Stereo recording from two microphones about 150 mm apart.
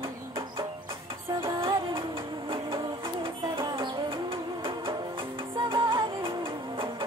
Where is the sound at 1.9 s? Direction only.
35° right (ahead or behind).